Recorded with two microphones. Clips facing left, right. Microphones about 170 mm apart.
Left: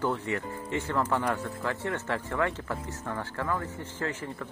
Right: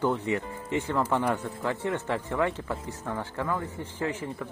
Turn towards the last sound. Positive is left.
turn(degrees=-15)  # may be behind; listen again after turning